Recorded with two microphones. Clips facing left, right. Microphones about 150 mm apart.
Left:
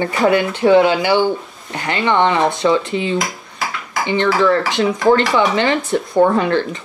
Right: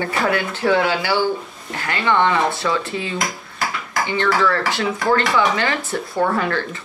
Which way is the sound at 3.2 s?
Centre (ahead or behind).